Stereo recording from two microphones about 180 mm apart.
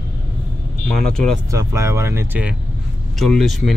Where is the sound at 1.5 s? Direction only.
15° right (ahead or behind).